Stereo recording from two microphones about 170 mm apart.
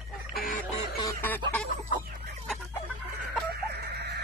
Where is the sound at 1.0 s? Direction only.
15° left (ahead or behind).